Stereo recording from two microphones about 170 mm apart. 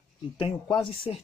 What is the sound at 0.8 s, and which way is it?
Speech, 35° left (ahead or behind).